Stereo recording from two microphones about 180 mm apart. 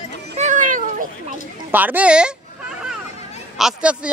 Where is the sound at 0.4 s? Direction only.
45° right (ahead or behind).